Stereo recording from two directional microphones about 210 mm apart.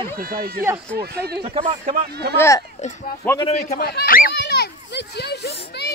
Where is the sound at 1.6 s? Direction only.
35° right (ahead or behind).